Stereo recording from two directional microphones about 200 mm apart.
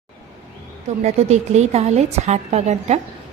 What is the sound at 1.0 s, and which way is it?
A woman's voice, 35° right (ahead or behind).